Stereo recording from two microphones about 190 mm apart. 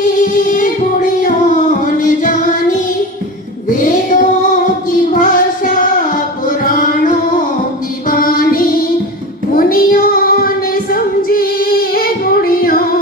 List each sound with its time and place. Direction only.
2.0 s music: 40° left (ahead or behind)
3.7 s music: 45° left (ahead or behind)
5.1 s child singing: 45° left (ahead or behind)
6.6 s music: 45° left (ahead or behind)
8.1 s music: 50° left (ahead or behind)
9.5 s child singing: 50° left (ahead or behind)